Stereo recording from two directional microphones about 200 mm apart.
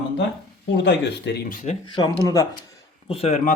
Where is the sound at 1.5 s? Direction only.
40° left (ahead or behind).